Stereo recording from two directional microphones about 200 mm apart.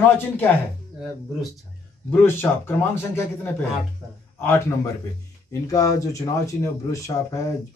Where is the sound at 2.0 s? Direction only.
10° left (ahead or behind).